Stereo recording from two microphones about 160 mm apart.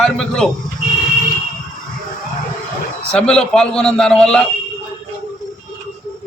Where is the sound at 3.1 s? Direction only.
5° left (ahead or behind).